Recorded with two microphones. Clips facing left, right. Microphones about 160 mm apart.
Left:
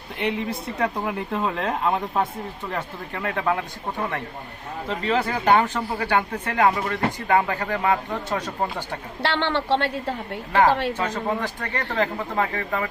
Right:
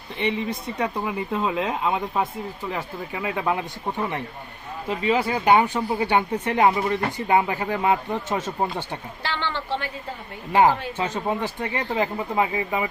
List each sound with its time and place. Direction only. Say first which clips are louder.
0.2 s speech: even; centre (ahead or behind); by 8.5 s 20° right (ahead or behind)
9.2 s a woman's voice: left 6 dB; 70° left (ahead or behind)
10.9 s speech: even; 20° right (ahead or behind)